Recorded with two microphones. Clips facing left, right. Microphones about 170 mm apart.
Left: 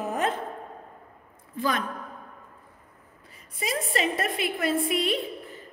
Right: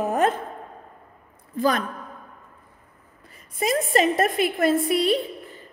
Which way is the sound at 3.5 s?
45° right (ahead or behind).